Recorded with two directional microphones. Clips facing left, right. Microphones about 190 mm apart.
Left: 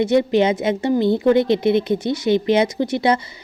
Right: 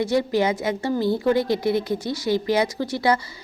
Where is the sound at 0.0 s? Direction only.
20° left (ahead or behind).